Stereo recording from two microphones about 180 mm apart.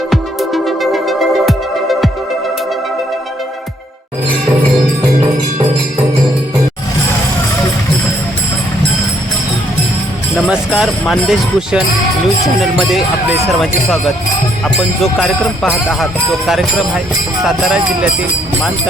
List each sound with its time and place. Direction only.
0.1 s music: centre (ahead or behind)
10.5 s speech: 5° right (ahead or behind)
11.0 s jingle bell: centre (ahead or behind)
13.5 s jingle bell: centre (ahead or behind)